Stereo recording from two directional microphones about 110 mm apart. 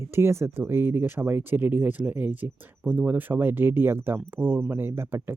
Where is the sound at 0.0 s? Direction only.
25° right (ahead or behind).